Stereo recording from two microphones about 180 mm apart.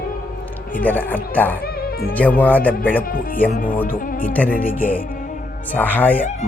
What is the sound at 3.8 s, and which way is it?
Music, 50° left (ahead or behind).